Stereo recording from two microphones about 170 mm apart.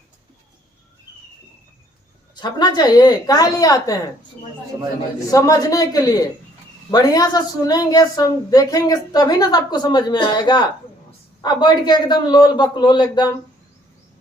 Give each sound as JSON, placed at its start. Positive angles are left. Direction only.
{"t": 2.3, "sound": "a woman's voice", "side_deg": 25}
{"t": 5.3, "sound": "a woman's voice", "side_deg": 20}